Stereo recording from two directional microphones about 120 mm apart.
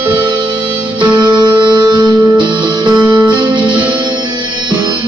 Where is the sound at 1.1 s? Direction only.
40° right (ahead or behind).